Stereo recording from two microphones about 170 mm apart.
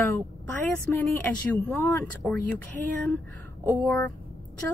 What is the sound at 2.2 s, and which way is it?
Speech, 5° left (ahead or behind).